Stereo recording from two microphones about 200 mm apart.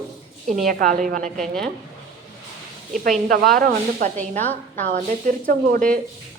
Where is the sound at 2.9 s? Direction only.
40° right (ahead or behind).